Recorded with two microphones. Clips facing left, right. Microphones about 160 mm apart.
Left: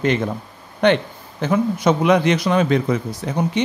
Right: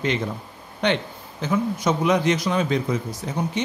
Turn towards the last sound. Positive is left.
turn(degrees=65)  # may be behind; listen again after turning